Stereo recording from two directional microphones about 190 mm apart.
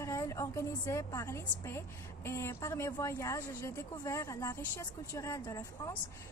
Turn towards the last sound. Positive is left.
turn(degrees=15)  # may be behind; listen again after turning